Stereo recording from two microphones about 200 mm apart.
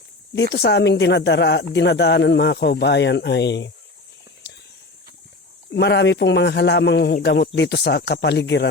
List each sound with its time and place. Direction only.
0.3 s speech: 55° left (ahead or behind)
5.7 s speech: 60° left (ahead or behind)